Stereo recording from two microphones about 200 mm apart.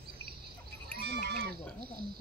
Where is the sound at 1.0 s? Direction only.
55° right (ahead or behind).